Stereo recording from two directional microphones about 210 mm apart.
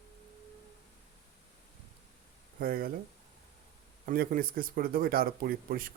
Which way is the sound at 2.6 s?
45° right (ahead or behind).